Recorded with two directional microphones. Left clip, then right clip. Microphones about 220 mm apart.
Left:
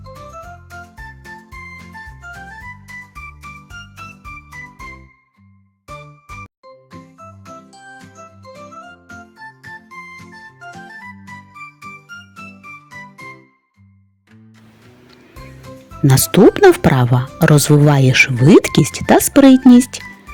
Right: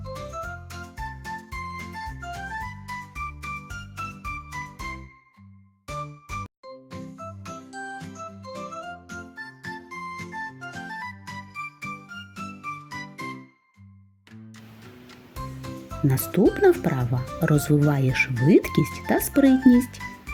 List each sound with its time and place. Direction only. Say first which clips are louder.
0.1 s music: even; centre (ahead or behind)
3.7 s music: left 5 dB; centre (ahead or behind)
7.2 s music: left 2 dB; centre (ahead or behind)
10.6 s music: left 3 dB; centre (ahead or behind)
16.0 s speech: left 11 dB; 40° left (ahead or behind)